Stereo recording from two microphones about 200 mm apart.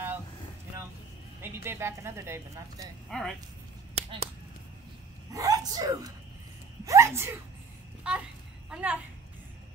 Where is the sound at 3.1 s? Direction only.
Centre (ahead or behind).